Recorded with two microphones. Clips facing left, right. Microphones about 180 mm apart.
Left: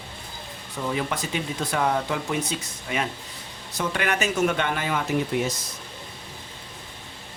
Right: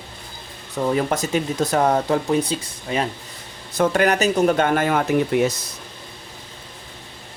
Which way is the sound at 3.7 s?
50° right (ahead or behind).